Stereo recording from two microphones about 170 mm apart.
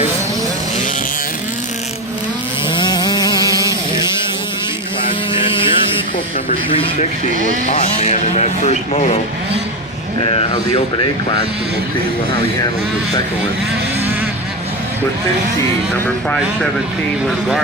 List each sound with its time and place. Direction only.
2.7 s vehicle: 25° left (ahead or behind)
3.5 s a sound: 20° right (ahead or behind)
5.3 s vehicle: 30° left (ahead or behind)
6.5 s speech: 35° left (ahead or behind)
7.3 s speech: 50° right (ahead or behind)
7.7 s speech: 40° left (ahead or behind)
10.3 s speech: 35° left (ahead or behind)
16.0 s speech: 5° left (ahead or behind)